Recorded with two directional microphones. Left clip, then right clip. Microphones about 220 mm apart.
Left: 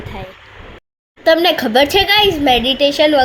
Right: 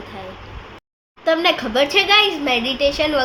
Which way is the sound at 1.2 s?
30° left (ahead or behind).